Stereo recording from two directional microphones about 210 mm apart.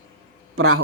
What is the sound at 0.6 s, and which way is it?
Speech, 90° right.